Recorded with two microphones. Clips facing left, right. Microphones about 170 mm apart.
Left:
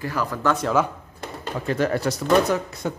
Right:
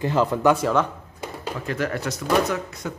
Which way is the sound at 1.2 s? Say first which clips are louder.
Right 1 dB; 5° right (ahead or behind).